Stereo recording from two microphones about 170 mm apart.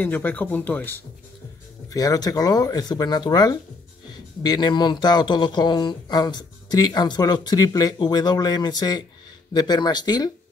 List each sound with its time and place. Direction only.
0.0 s speech: 10° left (ahead or behind)
1.9 s speech: 20° left (ahead or behind)